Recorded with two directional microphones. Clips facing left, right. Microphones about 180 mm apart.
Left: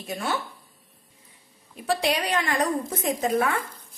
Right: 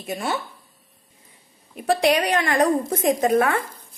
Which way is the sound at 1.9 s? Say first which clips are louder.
Right 6 dB; 60° right (ahead or behind).